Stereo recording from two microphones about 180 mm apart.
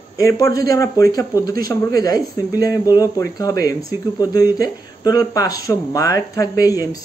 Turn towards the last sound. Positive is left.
turn(degrees=20)  # may be behind; listen again after turning